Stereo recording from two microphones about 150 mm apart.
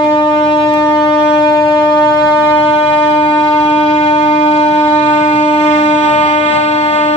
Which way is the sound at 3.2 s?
35° left (ahead or behind).